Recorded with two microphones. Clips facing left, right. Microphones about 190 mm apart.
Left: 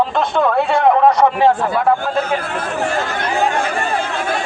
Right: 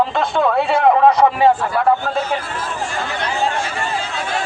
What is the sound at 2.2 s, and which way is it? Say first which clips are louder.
Speech: left 2 dB; 55° left (ahead or behind).